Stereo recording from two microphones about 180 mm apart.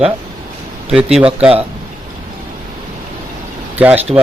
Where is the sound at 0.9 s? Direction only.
5° right (ahead or behind).